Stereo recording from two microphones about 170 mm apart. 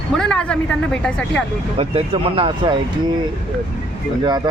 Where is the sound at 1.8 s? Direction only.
35° right (ahead or behind).